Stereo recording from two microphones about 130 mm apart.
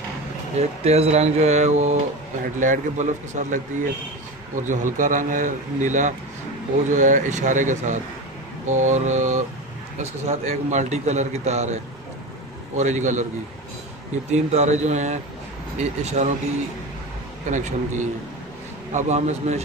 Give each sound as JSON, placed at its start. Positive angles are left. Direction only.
{"t": 0.6, "sound": "a man's voice", "side_deg": -55}
{"t": 2.6, "sound": "a man's voice", "side_deg": -75}
{"t": 4.6, "sound": "a man's voice", "side_deg": -90}
{"t": 14.3, "sound": "a man's voice", "side_deg": -60}
{"t": 17.5, "sound": "a man's voice", "side_deg": -70}